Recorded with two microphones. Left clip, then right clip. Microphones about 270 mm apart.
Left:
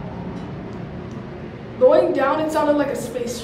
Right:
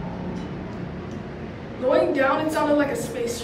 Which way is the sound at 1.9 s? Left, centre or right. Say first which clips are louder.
Left 3 dB; centre.